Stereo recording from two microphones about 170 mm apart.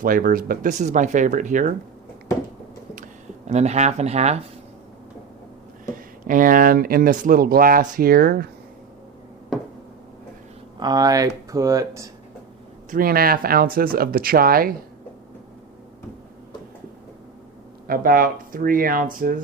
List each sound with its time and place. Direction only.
0.0 s speech: 55° right (ahead or behind)
2.9 s a sound: 45° right (ahead or behind)
6.2 s speech: 55° right (ahead or behind)
10.8 s speech: 25° right (ahead or behind)
12.9 s speech: 60° right (ahead or behind)
17.8 s speech: 60° right (ahead or behind)